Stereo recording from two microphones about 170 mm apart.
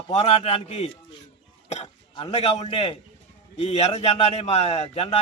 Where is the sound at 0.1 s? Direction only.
40° left (ahead or behind).